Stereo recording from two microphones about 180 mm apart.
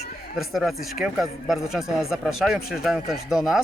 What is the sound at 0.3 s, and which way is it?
A man's voice, centre (ahead or behind).